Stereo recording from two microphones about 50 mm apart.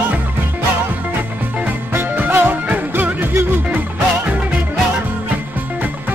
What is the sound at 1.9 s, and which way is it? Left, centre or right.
Music, right.